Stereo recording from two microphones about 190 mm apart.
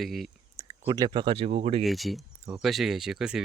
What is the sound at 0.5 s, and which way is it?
Speech, 20° right (ahead or behind).